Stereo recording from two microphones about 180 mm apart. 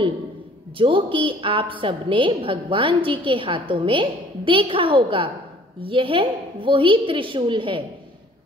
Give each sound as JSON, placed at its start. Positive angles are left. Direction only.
{"t": 0.7, "sound": "a woman's voice", "side_deg": -30}